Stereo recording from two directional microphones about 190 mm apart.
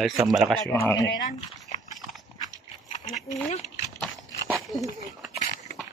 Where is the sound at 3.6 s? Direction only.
Centre (ahead or behind).